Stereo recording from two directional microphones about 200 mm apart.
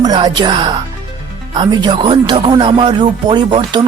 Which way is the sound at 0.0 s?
20° right (ahead or behind).